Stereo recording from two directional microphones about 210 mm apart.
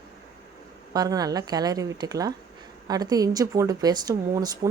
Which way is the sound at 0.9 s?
15° right (ahead or behind).